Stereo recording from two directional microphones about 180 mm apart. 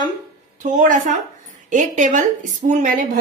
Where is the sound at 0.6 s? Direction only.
45° right (ahead or behind).